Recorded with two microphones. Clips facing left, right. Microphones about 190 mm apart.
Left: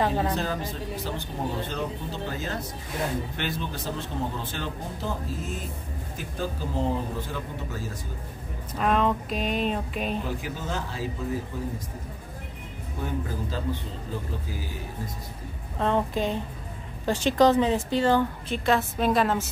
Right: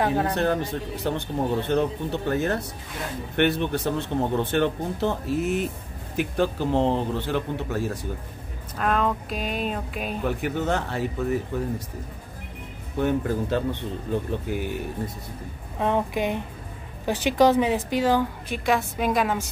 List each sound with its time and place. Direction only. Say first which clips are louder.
0.0 s speech: right 2 dB; 5° right (ahead or behind)
0.3 s a man's voice: right 5 dB; 65° right (ahead or behind)
8.7 s speech: even; centre (ahead or behind)
10.2 s a man's voice: right 7 dB; 65° right (ahead or behind)
13.0 s a man's voice: right 8 dB; 65° right (ahead or behind)
15.8 s a woman's voice: right 1 dB; 15° right (ahead or behind)